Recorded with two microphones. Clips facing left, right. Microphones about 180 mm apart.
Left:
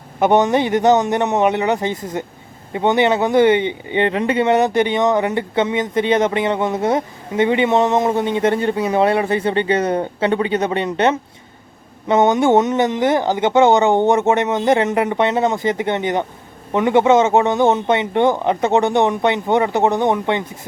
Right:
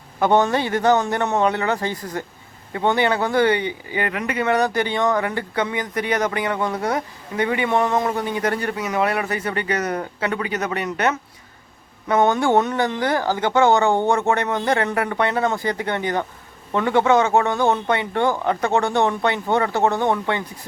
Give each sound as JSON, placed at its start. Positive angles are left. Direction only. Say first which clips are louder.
{"t": 0.2, "sound": "speech", "louder": "left 3 dB", "side_deg": 20}